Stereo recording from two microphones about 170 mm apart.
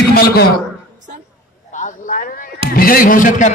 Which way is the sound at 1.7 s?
50° left (ahead or behind).